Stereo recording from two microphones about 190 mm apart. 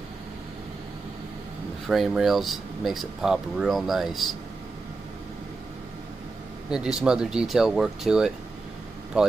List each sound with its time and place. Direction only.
1.9 s speech: centre (ahead or behind)
7.0 s speech: 5° right (ahead or behind)